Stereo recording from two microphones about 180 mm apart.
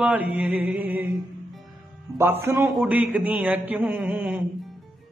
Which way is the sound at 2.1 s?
15° right (ahead or behind).